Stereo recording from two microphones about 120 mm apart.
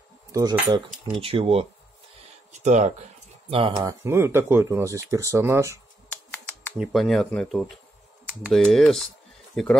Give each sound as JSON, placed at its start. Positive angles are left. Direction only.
{"t": 0.3, "sound": "speech", "side_deg": -30}
{"t": 1.1, "sound": "speech", "side_deg": -50}
{"t": 2.6, "sound": "speech", "side_deg": -75}
{"t": 3.4, "sound": "speech", "side_deg": -50}
{"t": 3.8, "sound": "speech", "side_deg": -20}
{"t": 6.0, "sound": "finger snapping", "side_deg": 15}
{"t": 6.8, "sound": "speech", "side_deg": 0}
{"t": 8.7, "sound": "speech", "side_deg": 0}